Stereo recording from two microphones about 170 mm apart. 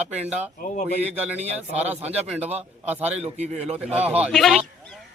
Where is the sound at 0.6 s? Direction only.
45° left (ahead or behind).